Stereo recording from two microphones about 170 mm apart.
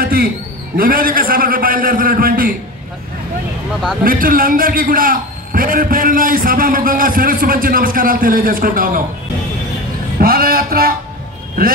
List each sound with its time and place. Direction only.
0.0 s a man's voice: 60° right (ahead or behind)
4.0 s a man's voice: 55° right (ahead or behind)
10.2 s a man's voice: 60° right (ahead or behind)